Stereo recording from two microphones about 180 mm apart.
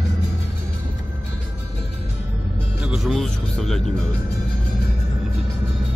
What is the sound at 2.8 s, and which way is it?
Music, 5° right (ahead or behind).